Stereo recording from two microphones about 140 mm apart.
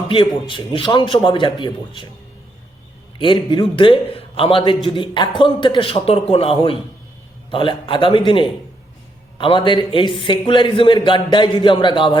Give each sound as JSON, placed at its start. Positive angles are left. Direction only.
{"t": 0.4, "sound": "a man's voice", "side_deg": 35}
{"t": 3.2, "sound": "a man's voice", "side_deg": 35}